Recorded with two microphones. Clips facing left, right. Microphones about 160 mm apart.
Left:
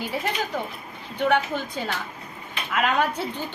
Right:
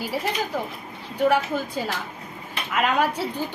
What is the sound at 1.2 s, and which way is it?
A woman's voice, 5° right (ahead or behind).